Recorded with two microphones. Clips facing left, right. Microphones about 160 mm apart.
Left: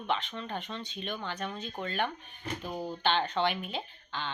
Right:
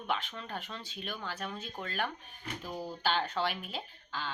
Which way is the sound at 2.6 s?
20° left (ahead or behind).